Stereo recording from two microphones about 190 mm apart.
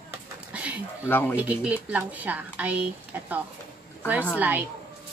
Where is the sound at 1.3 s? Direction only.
5° right (ahead or behind).